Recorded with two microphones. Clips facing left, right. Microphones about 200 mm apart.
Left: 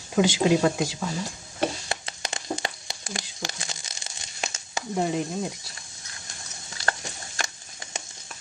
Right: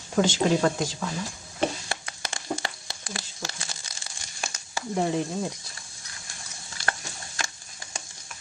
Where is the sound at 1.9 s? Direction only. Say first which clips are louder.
Left 2 dB; 20° left (ahead or behind).